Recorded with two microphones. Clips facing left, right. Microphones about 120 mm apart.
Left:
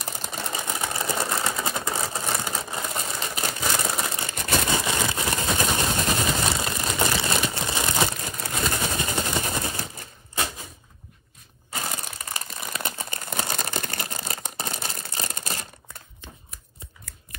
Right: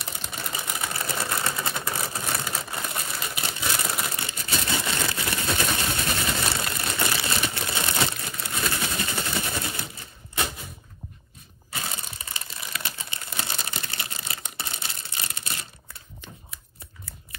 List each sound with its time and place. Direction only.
0.0 s sewing machine: 35° left (ahead or behind)
3.3 s crumpling: 50° left (ahead or behind)
3.6 s crumpling: 25° left (ahead or behind)
4.3 s a sound: 55° left (ahead or behind)
4.6 s vehicle: 20° left (ahead or behind)
6.0 s a sound: 25° left (ahead or behind)
11.7 s crumpling: 55° left (ahead or behind)